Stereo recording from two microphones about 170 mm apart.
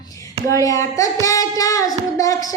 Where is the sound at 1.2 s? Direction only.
20° left (ahead or behind).